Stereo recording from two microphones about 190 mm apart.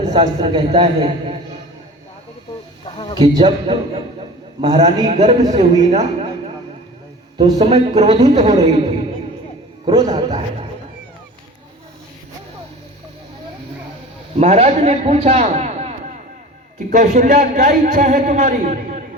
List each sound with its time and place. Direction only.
0.0 s a man's voice: 35° right (ahead or behind)
2.8 s a sound: 25° left (ahead or behind)
3.3 s a man's voice: 35° right (ahead or behind)
7.3 s a man's voice: 20° right (ahead or behind)
7.7 s a man's voice: 35° right (ahead or behind)
8.4 s a man's voice: 20° right (ahead or behind)
10.1 s a man's voice: 35° right (ahead or behind)
14.3 s a man's voice: 35° right (ahead or behind)